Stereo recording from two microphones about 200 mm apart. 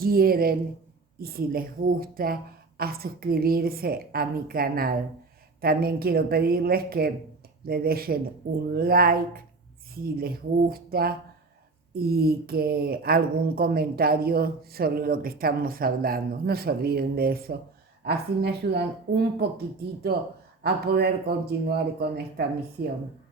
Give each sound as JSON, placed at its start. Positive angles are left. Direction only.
{"t": 0.0, "sound": "speech", "side_deg": -50}